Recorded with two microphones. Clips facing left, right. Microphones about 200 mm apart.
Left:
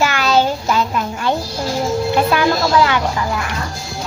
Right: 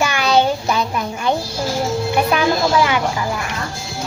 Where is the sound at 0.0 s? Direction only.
15° right (ahead or behind).